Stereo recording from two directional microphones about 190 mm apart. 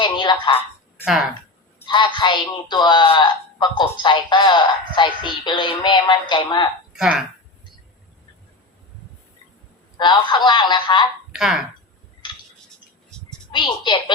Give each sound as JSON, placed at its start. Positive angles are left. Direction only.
{"t": 0.0, "sound": "a sound", "side_deg": 25}
{"t": 1.0, "sound": "speech", "side_deg": -5}
{"t": 1.9, "sound": "speech", "side_deg": 25}
{"t": 6.9, "sound": "speech", "side_deg": -5}
{"t": 10.0, "sound": "speech", "side_deg": 25}
{"t": 11.3, "sound": "speech", "side_deg": -5}
{"t": 13.5, "sound": "speech", "side_deg": 25}